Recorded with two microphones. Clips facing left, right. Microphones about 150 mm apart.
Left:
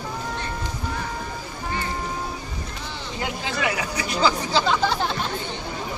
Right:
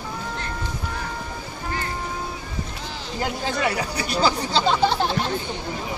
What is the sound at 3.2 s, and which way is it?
Chatter, 40° right (ahead or behind).